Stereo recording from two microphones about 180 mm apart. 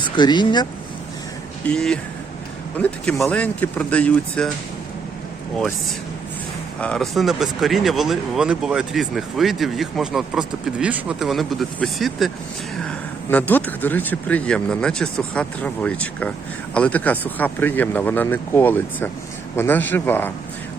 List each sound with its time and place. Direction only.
0.0 s speech: 25° left (ahead or behind)
1.6 s speech: 5° left (ahead or behind)
6.7 s speech: 5° left (ahead or behind)
13.3 s speech: 10° left (ahead or behind)